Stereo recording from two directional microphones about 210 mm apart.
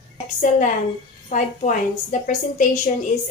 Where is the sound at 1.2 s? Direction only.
35° left (ahead or behind).